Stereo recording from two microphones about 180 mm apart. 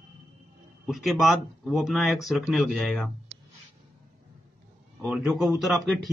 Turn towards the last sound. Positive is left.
turn(degrees=0)  # may be behind; listen again after turning